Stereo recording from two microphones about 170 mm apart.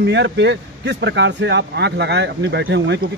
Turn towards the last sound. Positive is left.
turn(degrees=-90)